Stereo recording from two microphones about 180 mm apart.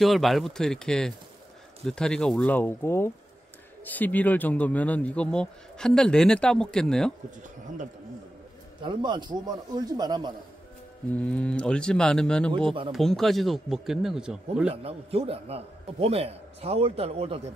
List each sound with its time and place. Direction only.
0.0 s speech: centre (ahead or behind)
7.2 s speech: 45° right (ahead or behind)
8.8 s a man's voice: 25° right (ahead or behind)
11.2 s speech: 5° left (ahead or behind)
14.7 s a man's voice: 35° right (ahead or behind)